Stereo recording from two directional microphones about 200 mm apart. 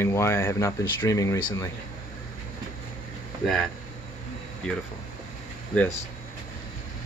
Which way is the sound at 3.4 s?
Centre (ahead or behind).